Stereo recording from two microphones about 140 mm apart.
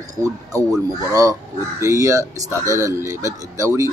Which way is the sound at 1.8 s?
25° right (ahead or behind).